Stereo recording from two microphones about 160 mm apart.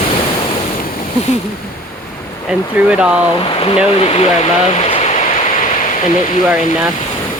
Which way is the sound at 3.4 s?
35° left (ahead or behind).